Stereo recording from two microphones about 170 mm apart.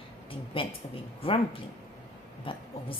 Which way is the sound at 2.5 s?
30° left (ahead or behind).